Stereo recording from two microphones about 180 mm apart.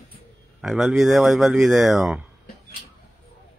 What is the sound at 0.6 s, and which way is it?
Speech, centre (ahead or behind).